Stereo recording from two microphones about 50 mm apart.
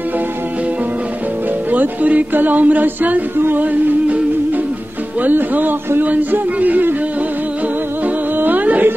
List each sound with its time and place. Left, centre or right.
1.7 s music: right
5.2 s a sound: right
8.0 s music: right